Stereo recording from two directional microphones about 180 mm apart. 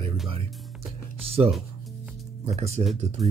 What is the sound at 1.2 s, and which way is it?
Music, 35° right (ahead or behind).